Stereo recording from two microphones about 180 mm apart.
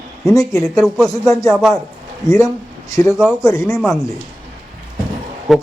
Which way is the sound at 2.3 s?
20° left (ahead or behind).